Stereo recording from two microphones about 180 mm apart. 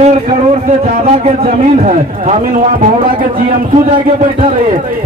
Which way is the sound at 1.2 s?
35° right (ahead or behind).